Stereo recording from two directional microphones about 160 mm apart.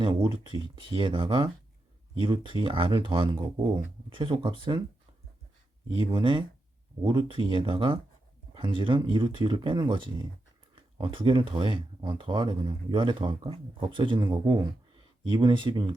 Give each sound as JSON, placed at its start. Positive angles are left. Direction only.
{"t": 0.0, "sound": "speech", "side_deg": -30}
{"t": 6.0, "sound": "speech", "side_deg": -30}